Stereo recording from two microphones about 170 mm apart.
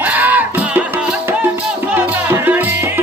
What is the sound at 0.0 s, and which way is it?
Music, 10° right (ahead or behind).